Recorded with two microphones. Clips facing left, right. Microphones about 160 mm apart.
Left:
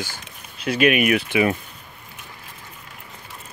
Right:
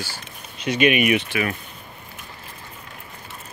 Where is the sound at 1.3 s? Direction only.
20° left (ahead or behind).